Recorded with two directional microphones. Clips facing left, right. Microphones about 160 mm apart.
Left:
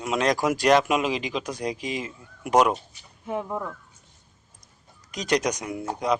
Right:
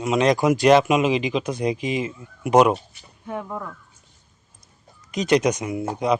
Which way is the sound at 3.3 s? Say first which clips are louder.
Left 1 dB; 15° left (ahead or behind).